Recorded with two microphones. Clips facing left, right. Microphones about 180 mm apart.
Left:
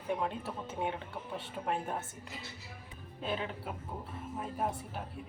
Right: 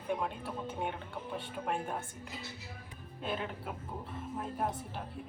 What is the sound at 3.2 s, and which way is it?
Speech, centre (ahead or behind).